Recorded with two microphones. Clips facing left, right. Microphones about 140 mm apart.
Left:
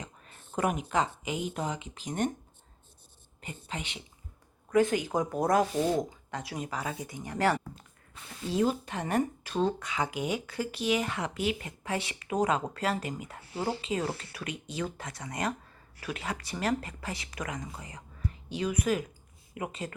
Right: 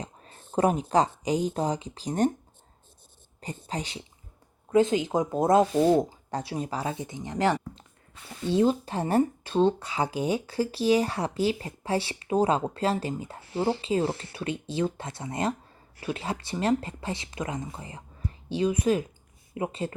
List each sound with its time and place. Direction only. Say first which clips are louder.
0.0 s speech: right 5 dB; 35° right (ahead or behind)
3.4 s speech: right 5 dB; 35° right (ahead or behind)
4.7 s speech: right 3 dB; 20° right (ahead or behind)
8.4 s speech: right 5 dB; 30° right (ahead or behind)